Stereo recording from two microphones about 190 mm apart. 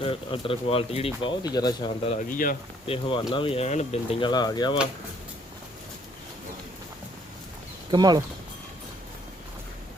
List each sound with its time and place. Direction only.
0.0 s speech: 30° left (ahead or behind)
2.0 s speech: 40° left (ahead or behind)
2.8 s speech: 30° left (ahead or behind)
7.9 s speech: 20° right (ahead or behind)